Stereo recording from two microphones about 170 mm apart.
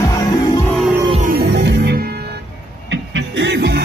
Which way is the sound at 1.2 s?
70° right (ahead or behind).